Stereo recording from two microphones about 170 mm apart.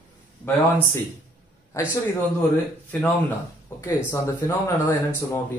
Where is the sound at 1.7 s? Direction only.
15° left (ahead or behind).